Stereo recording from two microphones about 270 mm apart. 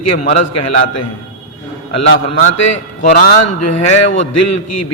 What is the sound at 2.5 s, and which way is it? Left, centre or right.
A man's voice, left.